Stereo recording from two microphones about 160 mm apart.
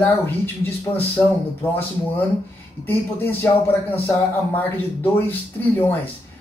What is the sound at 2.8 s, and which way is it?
Speech, 15° left (ahead or behind).